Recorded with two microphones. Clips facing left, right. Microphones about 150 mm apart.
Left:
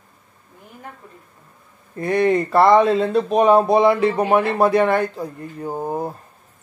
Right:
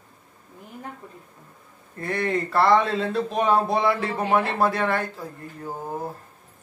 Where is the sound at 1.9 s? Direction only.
15° left (ahead or behind).